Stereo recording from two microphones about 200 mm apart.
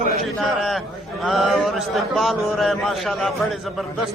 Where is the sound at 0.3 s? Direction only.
Centre (ahead or behind).